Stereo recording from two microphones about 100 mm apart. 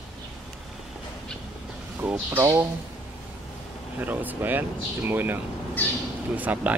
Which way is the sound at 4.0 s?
20° right (ahead or behind).